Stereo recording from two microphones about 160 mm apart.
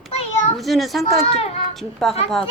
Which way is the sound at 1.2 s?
40° left (ahead or behind).